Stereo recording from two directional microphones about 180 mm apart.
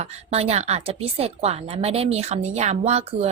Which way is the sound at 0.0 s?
35° right (ahead or behind).